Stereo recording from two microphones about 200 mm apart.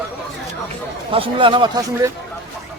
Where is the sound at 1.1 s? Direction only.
25° right (ahead or behind).